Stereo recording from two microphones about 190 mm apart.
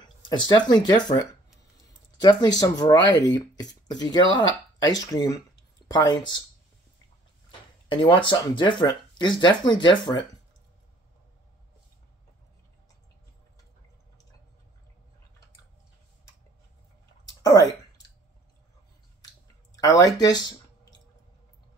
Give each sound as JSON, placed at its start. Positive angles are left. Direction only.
{"t": 0.5, "sound": "speech", "side_deg": 20}
{"t": 2.2, "sound": "speech", "side_deg": 20}
{"t": 7.9, "sound": "speech", "side_deg": 25}
{"t": 17.3, "sound": "a sound", "side_deg": 20}
{"t": 19.8, "sound": "speech", "side_deg": 20}